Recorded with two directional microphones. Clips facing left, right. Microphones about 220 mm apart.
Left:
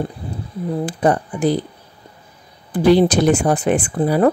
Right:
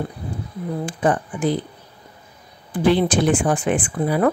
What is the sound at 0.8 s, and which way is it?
Speech, 40° left (ahead or behind).